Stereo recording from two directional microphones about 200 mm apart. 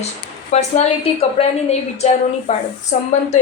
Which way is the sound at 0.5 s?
35° left (ahead or behind).